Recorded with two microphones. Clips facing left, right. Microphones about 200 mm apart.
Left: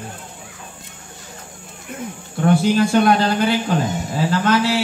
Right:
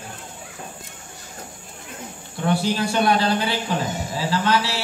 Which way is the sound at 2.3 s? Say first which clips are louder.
Left 6 dB; 50° left (ahead or behind).